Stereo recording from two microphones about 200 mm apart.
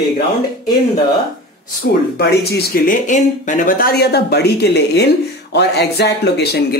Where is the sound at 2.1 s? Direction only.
50° left (ahead or behind).